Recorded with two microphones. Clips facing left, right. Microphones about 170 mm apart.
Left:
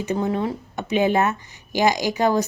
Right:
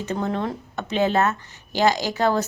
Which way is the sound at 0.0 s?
10° left (ahead or behind).